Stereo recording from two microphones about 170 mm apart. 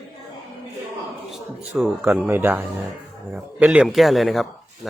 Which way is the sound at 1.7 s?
5° right (ahead or behind).